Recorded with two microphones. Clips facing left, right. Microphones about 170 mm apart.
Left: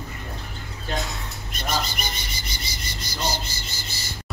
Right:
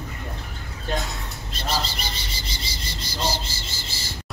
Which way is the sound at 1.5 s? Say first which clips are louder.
Even; 30° right (ahead or behind).